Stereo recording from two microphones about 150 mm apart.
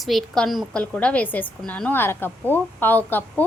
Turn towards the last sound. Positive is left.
turn(degrees=10)  # may be behind; listen again after turning